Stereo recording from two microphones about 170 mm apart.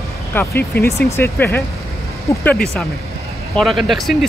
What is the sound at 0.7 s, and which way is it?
Speech, 65° left (ahead or behind).